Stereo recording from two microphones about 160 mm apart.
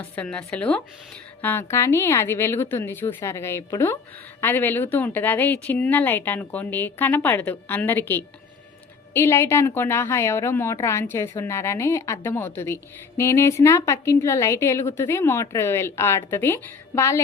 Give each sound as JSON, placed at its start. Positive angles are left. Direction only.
{"t": 0.0, "sound": "a woman's voice", "side_deg": 5}